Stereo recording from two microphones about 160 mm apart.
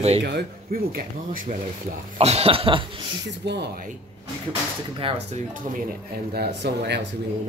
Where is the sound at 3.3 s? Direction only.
90° right.